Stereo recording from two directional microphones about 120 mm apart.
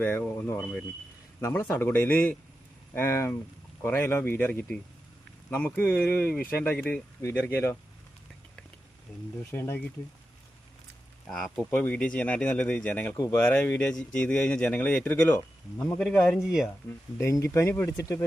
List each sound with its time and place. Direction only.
0.0 s speech: 15° left (ahead or behind)
0.6 s speech: 10° left (ahead or behind)
1.4 s speech: 20° left (ahead or behind)
9.5 s speech: 20° left (ahead or behind)
11.3 s speech: 5° left (ahead or behind)
13.1 s speech: 20° left (ahead or behind)
16.0 s speech: 5° left (ahead or behind)
17.2 s speech: 25° left (ahead or behind)